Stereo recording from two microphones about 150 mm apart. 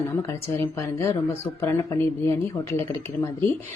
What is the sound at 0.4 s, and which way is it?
A woman's voice, 20° left (ahead or behind).